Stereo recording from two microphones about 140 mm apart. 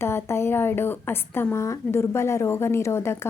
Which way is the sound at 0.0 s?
20° left (ahead or behind).